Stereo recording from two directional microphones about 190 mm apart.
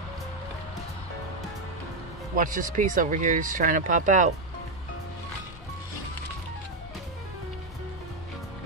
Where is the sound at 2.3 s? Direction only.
45° right (ahead or behind).